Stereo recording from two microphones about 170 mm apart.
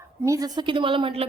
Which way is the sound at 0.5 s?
30° right (ahead or behind).